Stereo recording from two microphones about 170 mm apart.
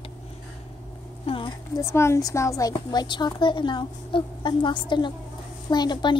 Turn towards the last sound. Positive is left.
turn(degrees=25)  # may be behind; listen again after turning